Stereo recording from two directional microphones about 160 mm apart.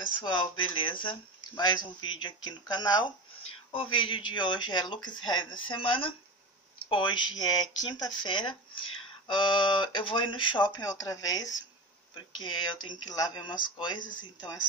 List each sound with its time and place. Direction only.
0.0 s speech: 30° left (ahead or behind)